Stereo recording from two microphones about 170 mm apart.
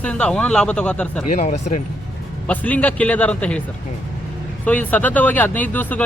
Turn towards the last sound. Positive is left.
turn(degrees=10)  # may be behind; listen again after turning